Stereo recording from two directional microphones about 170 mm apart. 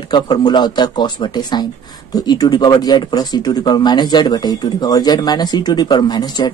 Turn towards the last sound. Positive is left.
turn(degrees=25)  # may be behind; listen again after turning